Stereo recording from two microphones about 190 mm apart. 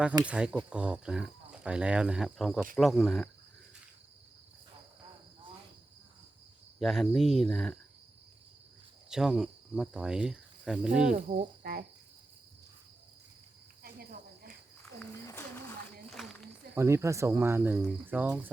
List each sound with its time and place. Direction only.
0.3 s speech: 5° right (ahead or behind)
6.7 s speech: centre (ahead or behind)
9.0 s cricket: centre (ahead or behind)
11.6 s speech: 50° right (ahead or behind)
13.8 s cricket: 50° right (ahead or behind)
14.9 s a sound: 10° left (ahead or behind)
16.0 s a sound: centre (ahead or behind)
16.7 s speech: 15° right (ahead or behind)